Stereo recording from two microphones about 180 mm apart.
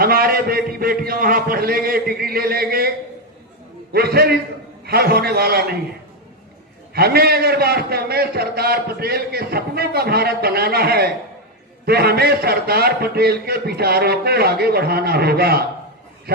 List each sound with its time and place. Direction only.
0.0 s a man's voice: 55° right (ahead or behind)
3.9 s a man's voice: 60° right (ahead or behind)
6.9 s a man's voice: 60° right (ahead or behind)